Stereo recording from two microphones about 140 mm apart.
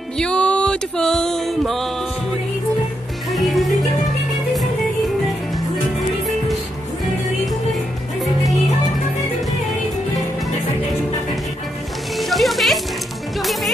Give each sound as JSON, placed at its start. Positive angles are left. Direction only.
{"t": 0.2, "sound": "music", "side_deg": 10}
{"t": 3.3, "sound": "music", "side_deg": 0}
{"t": 12.2, "sound": "music", "side_deg": 0}